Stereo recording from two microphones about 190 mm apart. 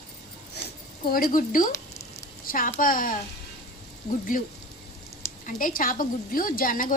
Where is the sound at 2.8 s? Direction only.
45° left (ahead or behind).